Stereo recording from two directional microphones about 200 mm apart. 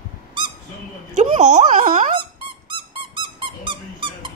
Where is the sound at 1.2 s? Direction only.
35° right (ahead or behind).